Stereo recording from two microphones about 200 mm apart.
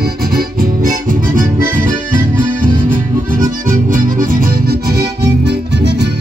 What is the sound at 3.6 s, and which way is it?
Music, 45° right (ahead or behind).